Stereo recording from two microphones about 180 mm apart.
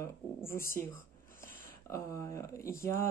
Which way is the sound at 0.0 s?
15° left (ahead or behind).